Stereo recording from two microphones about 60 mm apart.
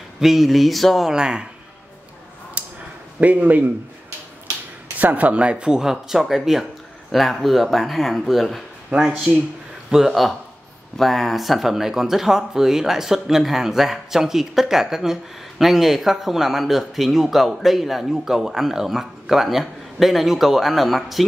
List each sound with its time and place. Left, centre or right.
0.2 s speech: centre
1.1 s speech: centre
2.6 s a sound: right
3.2 s speech: right
4.9 s speech: right; by 8.6 s centre
10.0 s speech: centre